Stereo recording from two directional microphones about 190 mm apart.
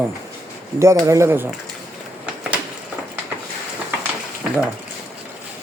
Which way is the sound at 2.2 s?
5° right (ahead or behind).